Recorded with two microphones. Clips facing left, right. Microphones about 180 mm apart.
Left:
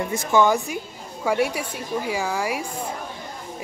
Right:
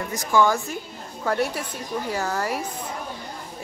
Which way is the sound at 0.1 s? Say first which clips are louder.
Left 1 dB; 25° left (ahead or behind).